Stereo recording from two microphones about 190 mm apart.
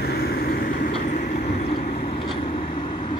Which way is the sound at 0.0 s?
55° left (ahead or behind).